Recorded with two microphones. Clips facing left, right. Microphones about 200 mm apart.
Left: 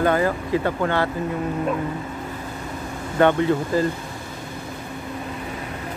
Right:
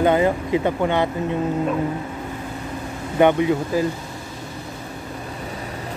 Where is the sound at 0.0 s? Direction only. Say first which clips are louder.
Right 3 dB; 20° right (ahead or behind).